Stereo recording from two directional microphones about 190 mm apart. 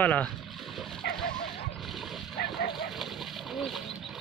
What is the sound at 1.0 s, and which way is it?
Dog, 60° left (ahead or behind).